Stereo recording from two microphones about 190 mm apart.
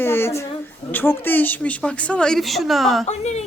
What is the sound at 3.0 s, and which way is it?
Speech, 35° left (ahead or behind).